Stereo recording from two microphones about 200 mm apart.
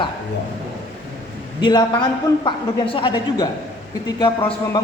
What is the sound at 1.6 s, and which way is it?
A man's voice, 20° left (ahead or behind).